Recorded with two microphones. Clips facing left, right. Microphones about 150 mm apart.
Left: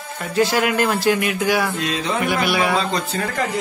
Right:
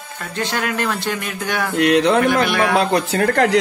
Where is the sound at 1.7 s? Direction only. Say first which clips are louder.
Right 9 dB; 70° right (ahead or behind).